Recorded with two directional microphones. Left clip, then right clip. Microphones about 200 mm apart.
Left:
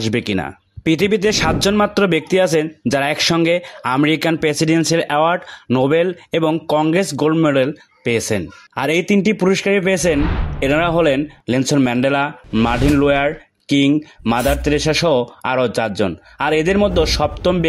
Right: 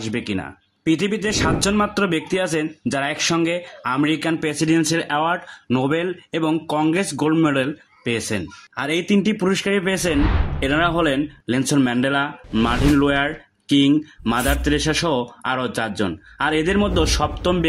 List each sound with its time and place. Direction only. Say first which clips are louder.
0.0 s speech: left 6 dB; 40° left (ahead or behind)
10.1 s speech: left 2 dB; centre (ahead or behind)
10.6 s speech: left 4 dB; 35° left (ahead or behind)